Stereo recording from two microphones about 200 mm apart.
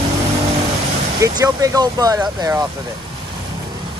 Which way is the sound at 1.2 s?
15° right (ahead or behind).